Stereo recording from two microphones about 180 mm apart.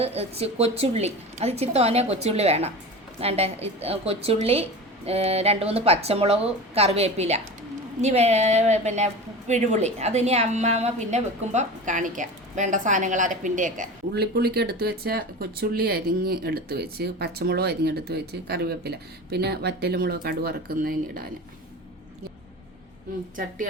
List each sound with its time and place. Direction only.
0.0 s a woman's voice: 35° right (ahead or behind)
14.1 s speech: 65° right (ahead or behind)